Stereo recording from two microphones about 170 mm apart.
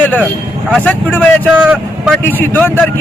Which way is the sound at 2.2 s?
10° left (ahead or behind).